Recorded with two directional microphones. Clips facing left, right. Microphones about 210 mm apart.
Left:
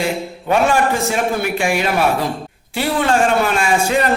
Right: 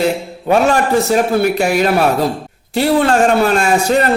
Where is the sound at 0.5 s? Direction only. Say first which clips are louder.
Right 3 dB; 40° right (ahead or behind).